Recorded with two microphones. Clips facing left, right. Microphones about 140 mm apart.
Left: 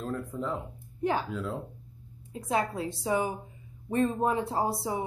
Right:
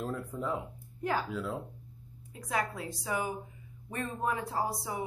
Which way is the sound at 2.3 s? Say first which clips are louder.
Left 5 dB; 25° left (ahead or behind).